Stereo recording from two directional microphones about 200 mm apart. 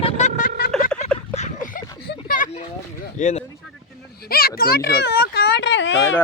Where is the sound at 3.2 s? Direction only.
35° left (ahead or behind).